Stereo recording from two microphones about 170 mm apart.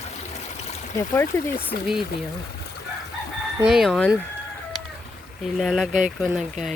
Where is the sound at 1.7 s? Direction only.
65° left (ahead or behind).